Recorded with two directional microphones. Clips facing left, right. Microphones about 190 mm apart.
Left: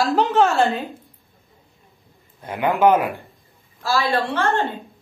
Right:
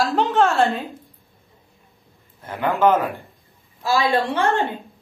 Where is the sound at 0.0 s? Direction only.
Centre (ahead or behind).